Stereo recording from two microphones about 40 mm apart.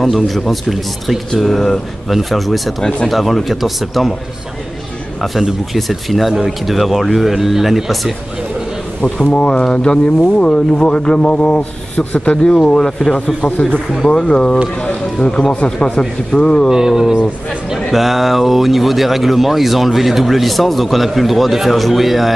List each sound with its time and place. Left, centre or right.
0.0 s speech: centre
5.7 s speech: centre
9.0 s speech: left
12.7 s speech: centre
16.7 s speech: centre
17.9 s speech: centre